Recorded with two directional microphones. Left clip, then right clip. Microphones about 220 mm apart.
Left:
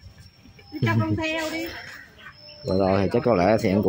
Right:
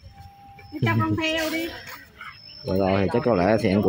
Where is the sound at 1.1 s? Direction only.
35° right (ahead or behind).